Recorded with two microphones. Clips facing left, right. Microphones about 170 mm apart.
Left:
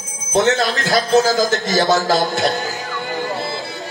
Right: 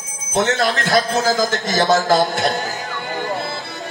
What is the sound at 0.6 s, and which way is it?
A man's voice, 50° right (ahead or behind).